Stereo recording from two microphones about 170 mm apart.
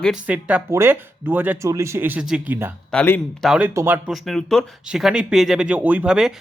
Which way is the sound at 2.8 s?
10° left (ahead or behind).